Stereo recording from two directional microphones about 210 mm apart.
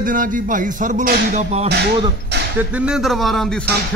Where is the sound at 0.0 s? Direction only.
40° right (ahead or behind).